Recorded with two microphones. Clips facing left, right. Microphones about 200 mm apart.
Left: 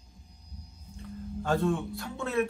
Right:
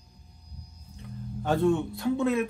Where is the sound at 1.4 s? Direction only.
20° right (ahead or behind).